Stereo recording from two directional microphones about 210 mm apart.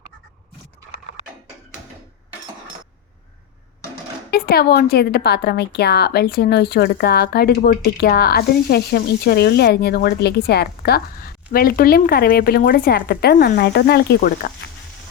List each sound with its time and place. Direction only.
4.3 s a woman's voice: 45° left (ahead or behind)